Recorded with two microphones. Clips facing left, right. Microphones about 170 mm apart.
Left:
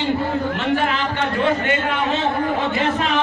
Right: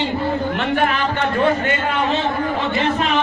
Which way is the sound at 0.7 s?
55° right (ahead or behind).